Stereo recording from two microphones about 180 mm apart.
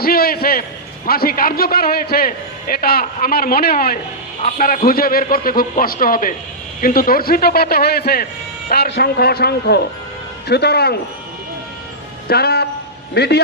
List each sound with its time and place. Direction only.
0.0 s a sound: 55° left (ahead or behind)
1.0 s a man's voice: 55° left (ahead or behind)
12.3 s a man's voice: 65° left (ahead or behind)